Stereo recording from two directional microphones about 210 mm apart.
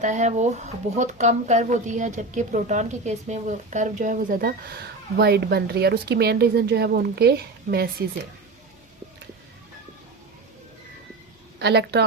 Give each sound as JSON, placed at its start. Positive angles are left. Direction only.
{"t": 0.0, "sound": "speech", "side_deg": -35}
{"t": 11.6, "sound": "speech", "side_deg": -50}